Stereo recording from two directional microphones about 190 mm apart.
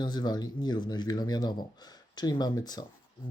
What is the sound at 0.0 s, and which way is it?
Speech, 20° left (ahead or behind).